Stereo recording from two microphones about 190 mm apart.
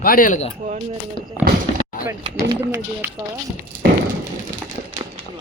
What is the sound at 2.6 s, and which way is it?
Speech, 10° right (ahead or behind).